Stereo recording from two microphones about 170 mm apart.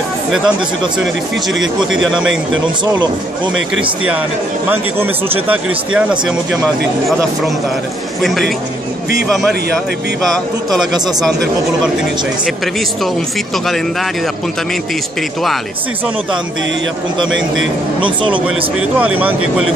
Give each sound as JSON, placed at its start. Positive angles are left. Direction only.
{"t": 1.5, "sound": "speech", "side_deg": 0}
{"t": 4.6, "sound": "speech", "side_deg": -10}
{"t": 8.2, "sound": "speech", "side_deg": 0}
{"t": 10.2, "sound": "speech", "side_deg": 0}
{"t": 18.0, "sound": "speech", "side_deg": -30}
{"t": 18.8, "sound": "speech", "side_deg": -10}